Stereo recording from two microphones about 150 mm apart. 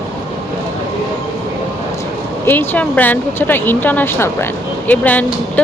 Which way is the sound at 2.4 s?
10° left (ahead or behind).